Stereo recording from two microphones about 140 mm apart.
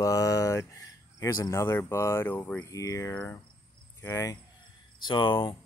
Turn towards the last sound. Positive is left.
turn(degrees=35)  # may be behind; listen again after turning